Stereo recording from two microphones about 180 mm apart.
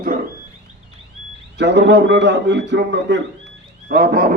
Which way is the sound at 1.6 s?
70° right (ahead or behind).